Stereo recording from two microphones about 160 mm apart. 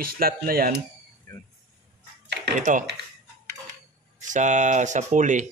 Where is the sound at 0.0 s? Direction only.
65° right (ahead or behind).